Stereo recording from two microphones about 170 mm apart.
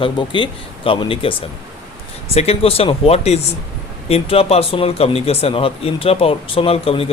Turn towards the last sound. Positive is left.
turn(degrees=35)  # may be behind; listen again after turning